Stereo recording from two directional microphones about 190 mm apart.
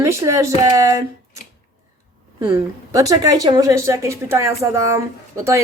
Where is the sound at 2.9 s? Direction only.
20° right (ahead or behind).